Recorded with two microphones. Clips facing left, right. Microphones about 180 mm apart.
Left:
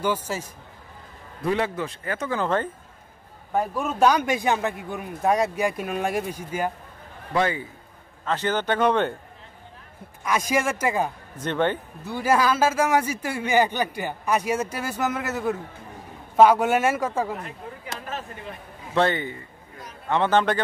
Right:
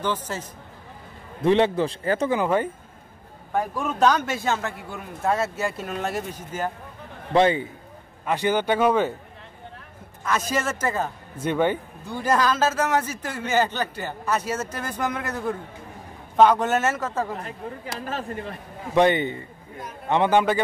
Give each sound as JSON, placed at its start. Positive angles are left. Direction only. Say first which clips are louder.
{"t": 0.0, "sound": "a man's voice", "louder": "left 2 dB", "side_deg": 10}
{"t": 1.4, "sound": "a man's voice", "louder": "right 6 dB", "side_deg": -25}
{"t": 2.3, "sound": "a man's voice", "louder": "left 2 dB", "side_deg": -10}
{"t": 3.5, "sound": "a man's voice", "louder": "left 1 dB", "side_deg": 5}
{"t": 7.3, "sound": "a man's voice", "louder": "right 5 dB", "side_deg": -25}
{"t": 8.3, "sound": "a man's voice", "louder": "right 2 dB", "side_deg": -10}
{"t": 10.2, "sound": "a man's voice", "louder": "left 2 dB", "side_deg": 10}
{"t": 11.3, "sound": "a man's voice", "louder": "right 2 dB", "side_deg": -10}
{"t": 12.0, "sound": "a man's voice", "louder": "left 1 dB", "side_deg": 5}
{"t": 18.9, "sound": "a man's voice", "louder": "right 4 dB", "side_deg": -20}